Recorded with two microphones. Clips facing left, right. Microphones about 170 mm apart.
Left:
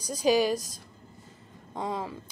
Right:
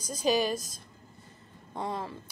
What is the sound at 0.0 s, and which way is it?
Speech, 10° left (ahead or behind).